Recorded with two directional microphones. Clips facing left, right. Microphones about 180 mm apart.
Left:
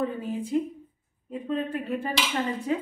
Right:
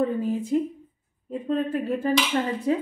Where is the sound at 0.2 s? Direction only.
40° right (ahead or behind).